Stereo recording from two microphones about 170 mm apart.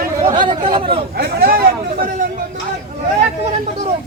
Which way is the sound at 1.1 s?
65° right (ahead or behind).